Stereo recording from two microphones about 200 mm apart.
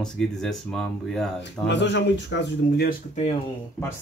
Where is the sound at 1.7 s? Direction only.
60° left (ahead or behind).